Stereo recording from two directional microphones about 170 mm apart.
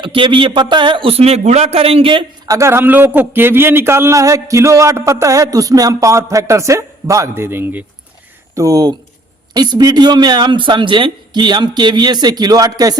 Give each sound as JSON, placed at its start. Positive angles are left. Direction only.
{"t": 0.0, "sound": "a man's voice", "side_deg": -30}
{"t": 2.6, "sound": "a man's voice", "side_deg": -15}